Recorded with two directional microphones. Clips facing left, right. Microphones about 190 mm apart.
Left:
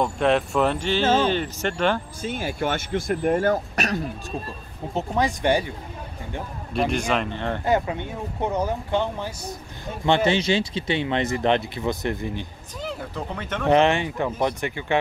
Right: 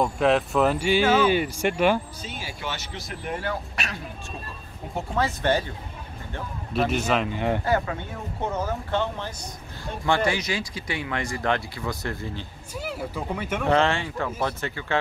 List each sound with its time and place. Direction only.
0.0 s speech: centre (ahead or behind)
2.2 s speech: 50° left (ahead or behind)
4.9 s speech: 15° left (ahead or behind)
6.7 s speech: 5° right (ahead or behind)
7.6 s speech: 20° left (ahead or behind)
12.8 s speech: 10° right (ahead or behind)
13.7 s speech: 20° left (ahead or behind)